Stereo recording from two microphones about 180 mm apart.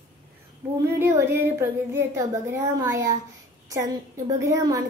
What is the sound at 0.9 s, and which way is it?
Speech, 15° right (ahead or behind).